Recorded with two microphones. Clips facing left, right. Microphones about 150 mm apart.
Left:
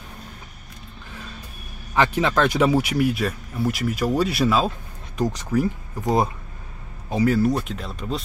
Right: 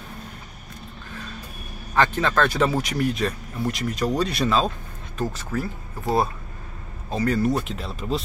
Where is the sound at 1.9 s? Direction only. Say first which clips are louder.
Left 1 dB; 15° left (ahead or behind).